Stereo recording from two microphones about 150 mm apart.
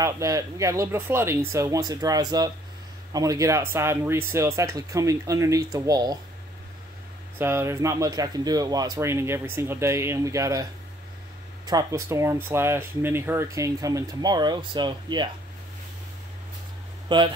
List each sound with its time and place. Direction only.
0.0 s speech: 20° right (ahead or behind)
7.3 s speech: 15° right (ahead or behind)
17.1 s speech: 30° right (ahead or behind)